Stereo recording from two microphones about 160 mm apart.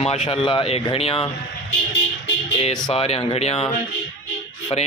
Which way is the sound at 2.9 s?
40° left (ahead or behind).